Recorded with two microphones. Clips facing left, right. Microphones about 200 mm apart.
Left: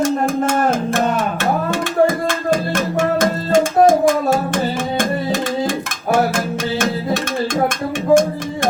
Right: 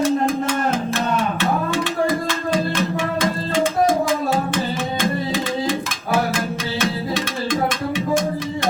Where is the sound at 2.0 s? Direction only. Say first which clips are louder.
Left 4 dB; 45° left (ahead or behind).